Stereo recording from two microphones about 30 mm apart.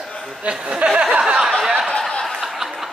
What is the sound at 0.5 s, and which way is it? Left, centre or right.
Speech, right.